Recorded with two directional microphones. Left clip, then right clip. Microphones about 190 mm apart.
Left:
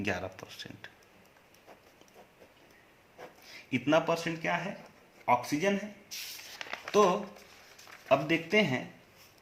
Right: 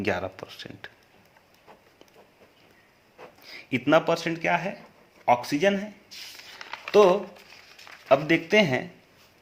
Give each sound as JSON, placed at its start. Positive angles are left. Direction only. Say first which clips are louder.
{"t": 0.0, "sound": "speech", "louder": "right 7 dB", "side_deg": -35}
{"t": 3.4, "sound": "speech", "louder": "right 5 dB", "side_deg": -40}
{"t": 6.9, "sound": "speech", "louder": "right 7 dB", "side_deg": -40}
{"t": 8.0, "sound": "speech", "louder": "right 6 dB", "side_deg": -50}